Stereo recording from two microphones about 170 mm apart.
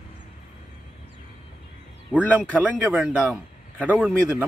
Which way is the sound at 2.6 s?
10° right (ahead or behind).